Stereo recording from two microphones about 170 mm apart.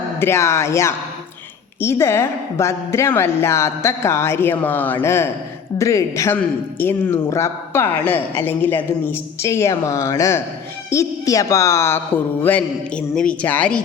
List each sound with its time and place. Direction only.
0.2 s a man's voice: 15° left (ahead or behind)